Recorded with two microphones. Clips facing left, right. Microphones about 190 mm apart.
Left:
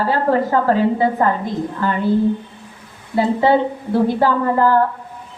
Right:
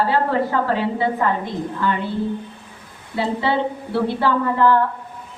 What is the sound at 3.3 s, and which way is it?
A woman's voice, 45° left (ahead or behind).